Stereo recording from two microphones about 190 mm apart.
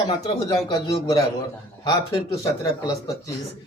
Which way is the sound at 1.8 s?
20° left (ahead or behind).